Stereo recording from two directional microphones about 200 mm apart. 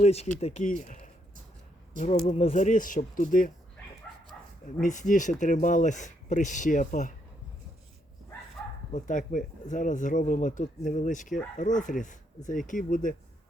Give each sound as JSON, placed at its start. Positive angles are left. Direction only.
{"t": 0.0, "sound": "speech", "side_deg": 30}
{"t": 2.2, "sound": "speech", "side_deg": 30}
{"t": 4.8, "sound": "speech", "side_deg": 40}
{"t": 8.9, "sound": "speech", "side_deg": 40}